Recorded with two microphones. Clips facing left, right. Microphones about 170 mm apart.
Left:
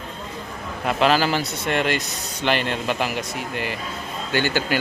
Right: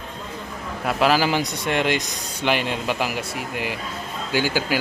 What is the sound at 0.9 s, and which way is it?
Speech, 5° right (ahead or behind).